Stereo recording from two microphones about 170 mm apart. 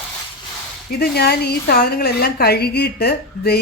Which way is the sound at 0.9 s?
65° left (ahead or behind).